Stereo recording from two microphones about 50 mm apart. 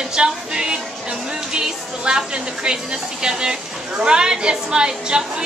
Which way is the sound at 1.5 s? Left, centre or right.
Centre.